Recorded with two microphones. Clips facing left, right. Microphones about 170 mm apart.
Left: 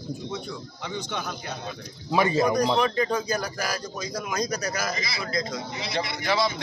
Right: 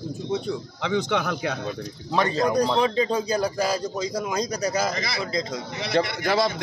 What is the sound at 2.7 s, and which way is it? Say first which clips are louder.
A man's voice: right 2 dB; 20° right (ahead or behind).